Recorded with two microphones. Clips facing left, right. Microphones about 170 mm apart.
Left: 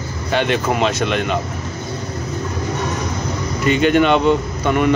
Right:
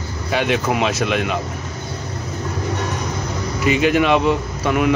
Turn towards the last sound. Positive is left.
turn(degrees=0)  # may be behind; listen again after turning